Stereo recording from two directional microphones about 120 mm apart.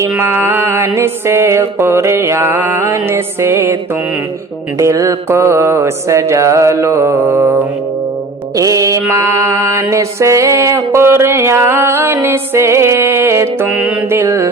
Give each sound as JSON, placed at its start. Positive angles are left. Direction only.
{"t": 0.0, "sound": "mantra", "side_deg": -20}
{"t": 4.8, "sound": "mantra", "side_deg": -25}